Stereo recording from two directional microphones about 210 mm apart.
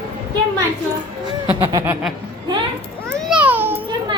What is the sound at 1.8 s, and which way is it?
Speech, 10° right (ahead or behind).